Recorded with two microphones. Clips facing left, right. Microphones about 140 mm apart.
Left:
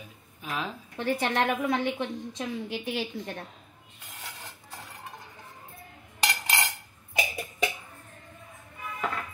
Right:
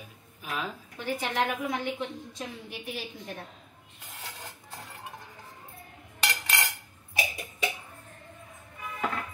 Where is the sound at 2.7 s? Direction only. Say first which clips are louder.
Left 6 dB; 85° left.